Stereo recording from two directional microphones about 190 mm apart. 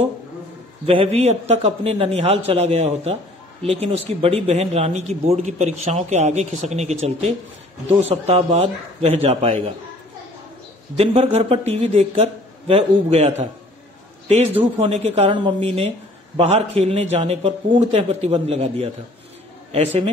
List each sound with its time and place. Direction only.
0.8 s a man's voice: 30° right (ahead or behind)
11.0 s a man's voice: 30° right (ahead or behind)
14.3 s a man's voice: 30° right (ahead or behind)